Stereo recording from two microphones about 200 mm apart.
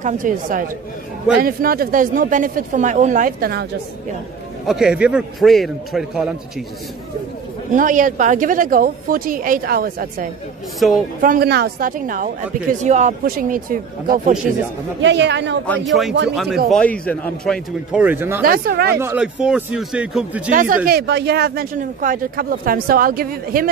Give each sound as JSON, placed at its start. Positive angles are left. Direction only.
{"t": 0.0, "sound": "speech", "side_deg": -40}
{"t": 4.6, "sound": "a man's voice", "side_deg": -5}
{"t": 7.7, "sound": "speech", "side_deg": -40}
{"t": 15.0, "sound": "a woman's voice", "side_deg": -65}
{"t": 15.6, "sound": "a man's voice", "side_deg": 5}
{"t": 16.1, "sound": "a woman's voice", "side_deg": -60}
{"t": 16.6, "sound": "a man's voice", "side_deg": 5}
{"t": 17.9, "sound": "speech", "side_deg": -10}
{"t": 18.4, "sound": "speech", "side_deg": -50}
{"t": 18.9, "sound": "a man's voice", "side_deg": -10}
{"t": 20.5, "sound": "speech", "side_deg": -45}